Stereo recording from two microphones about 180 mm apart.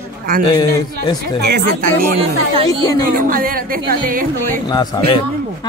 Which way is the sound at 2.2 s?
30° right (ahead or behind).